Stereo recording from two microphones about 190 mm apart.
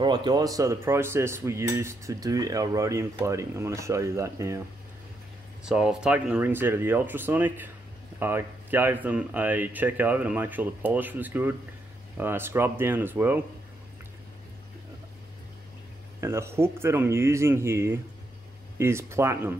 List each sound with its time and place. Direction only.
0.0 s speech: 25° right (ahead or behind)
5.7 s speech: 5° right (ahead or behind)
16.2 s speech: 15° right (ahead or behind)